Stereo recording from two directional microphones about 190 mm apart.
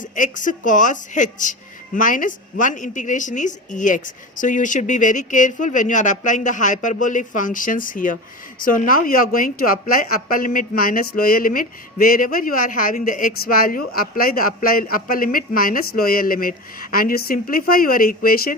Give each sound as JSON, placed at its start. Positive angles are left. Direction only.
{"t": 0.0, "sound": "a woman's voice", "side_deg": 45}